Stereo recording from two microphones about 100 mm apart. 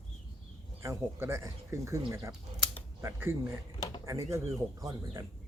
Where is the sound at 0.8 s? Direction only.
25° right (ahead or behind).